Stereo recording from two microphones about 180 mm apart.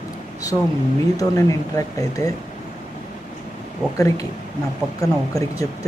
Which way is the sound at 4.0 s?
20° left (ahead or behind).